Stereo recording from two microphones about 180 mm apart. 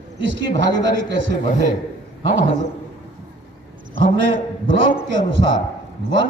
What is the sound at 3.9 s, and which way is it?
Speech, 90° right.